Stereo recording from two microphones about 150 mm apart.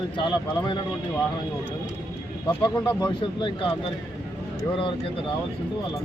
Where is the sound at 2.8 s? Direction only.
30° left (ahead or behind).